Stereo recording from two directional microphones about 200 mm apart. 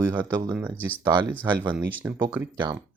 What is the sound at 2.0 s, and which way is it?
Speech, 10° right (ahead or behind).